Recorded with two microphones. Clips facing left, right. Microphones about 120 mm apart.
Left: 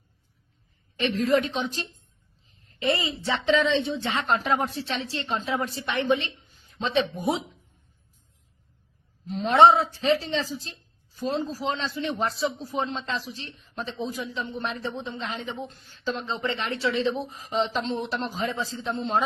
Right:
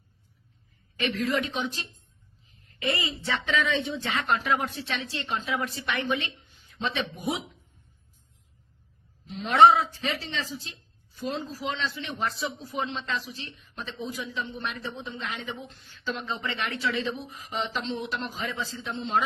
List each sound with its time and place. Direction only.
0.9 s a woman's voice: 35° left (ahead or behind)
9.2 s a man's voice: 40° left (ahead or behind)
9.5 s speech: 30° left (ahead or behind)